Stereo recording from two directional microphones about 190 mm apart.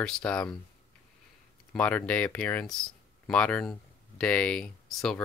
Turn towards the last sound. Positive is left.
turn(degrees=5)  # may be behind; listen again after turning